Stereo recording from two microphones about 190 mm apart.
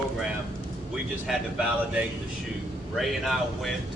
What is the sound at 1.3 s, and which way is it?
Speech, centre (ahead or behind).